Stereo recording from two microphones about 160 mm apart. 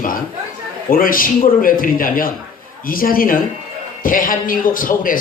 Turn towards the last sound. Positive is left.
turn(degrees=60)  # may be behind; listen again after turning